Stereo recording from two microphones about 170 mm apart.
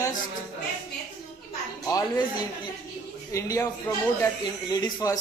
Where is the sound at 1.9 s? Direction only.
25° left (ahead or behind).